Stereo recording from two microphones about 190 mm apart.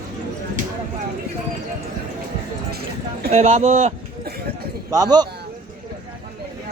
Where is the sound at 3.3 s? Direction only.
35° right (ahead or behind).